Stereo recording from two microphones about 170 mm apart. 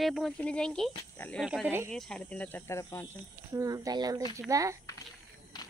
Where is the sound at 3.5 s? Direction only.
20° right (ahead or behind).